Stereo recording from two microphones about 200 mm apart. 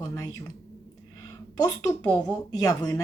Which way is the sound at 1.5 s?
15° left (ahead or behind).